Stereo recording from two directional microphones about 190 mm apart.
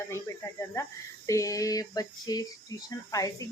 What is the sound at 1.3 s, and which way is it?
Speech, 15° left (ahead or behind).